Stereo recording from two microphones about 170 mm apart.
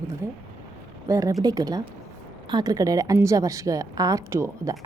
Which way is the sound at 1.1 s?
20° right (ahead or behind).